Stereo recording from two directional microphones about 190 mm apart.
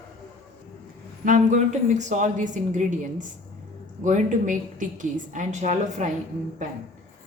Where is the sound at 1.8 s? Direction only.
40° right (ahead or behind).